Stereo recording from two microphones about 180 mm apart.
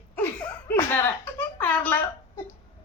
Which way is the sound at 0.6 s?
10° left (ahead or behind).